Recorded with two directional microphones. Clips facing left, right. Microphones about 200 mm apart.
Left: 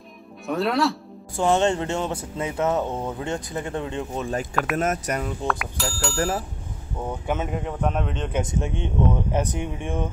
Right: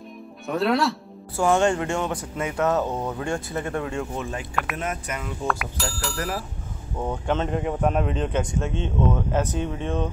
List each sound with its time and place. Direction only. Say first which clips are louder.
0.5 s speech: even; centre (ahead or behind)
1.4 s speech: even; 25° left (ahead or behind)
4.7 s speech: left 6 dB; 40° left (ahead or behind)
5.5 s speech: even; centre (ahead or behind)
6.1 s speech: left 6 dB; 30° left (ahead or behind)
7.1 s speech: right 2 dB; 10° left (ahead or behind)
7.6 s speech: right 3 dB; 5° right (ahead or behind)
8.4 s speech: even; 20° left (ahead or behind)